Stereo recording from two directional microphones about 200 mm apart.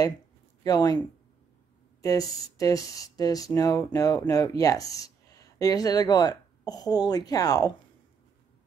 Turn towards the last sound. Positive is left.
turn(degrees=20)  # may be behind; listen again after turning